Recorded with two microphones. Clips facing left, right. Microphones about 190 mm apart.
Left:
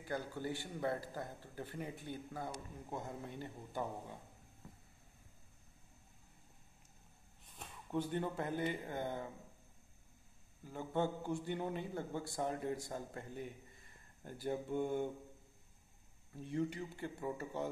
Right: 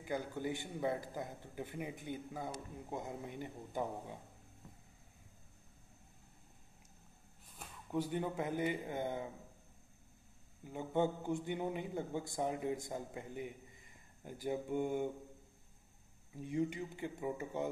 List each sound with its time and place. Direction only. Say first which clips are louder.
0.0 s a man's voice: right 2 dB; 20° right (ahead or behind)
7.5 s speech: right 1 dB; 5° right (ahead or behind)
10.6 s a man's voice: right 3 dB; 15° right (ahead or behind)
16.3 s a man's voice: right 2 dB; 15° right (ahead or behind)